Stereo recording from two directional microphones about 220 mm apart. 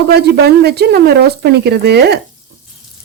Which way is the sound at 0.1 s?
45° right (ahead or behind).